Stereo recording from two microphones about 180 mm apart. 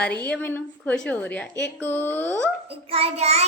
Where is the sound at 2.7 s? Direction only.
35° right (ahead or behind).